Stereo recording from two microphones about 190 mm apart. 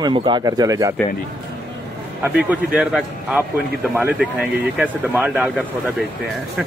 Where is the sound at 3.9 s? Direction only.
10° right (ahead or behind).